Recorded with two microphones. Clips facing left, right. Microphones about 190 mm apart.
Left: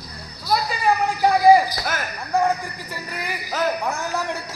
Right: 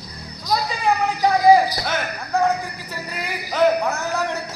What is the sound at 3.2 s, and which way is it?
Speech, 15° left (ahead or behind).